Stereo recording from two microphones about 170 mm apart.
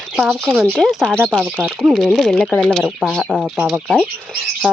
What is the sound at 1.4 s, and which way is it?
Speech, 10° right (ahead or behind).